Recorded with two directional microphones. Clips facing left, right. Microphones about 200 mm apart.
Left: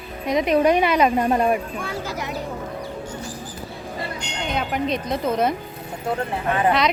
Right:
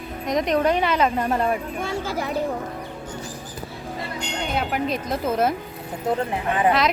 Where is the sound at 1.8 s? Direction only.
25° right (ahead or behind).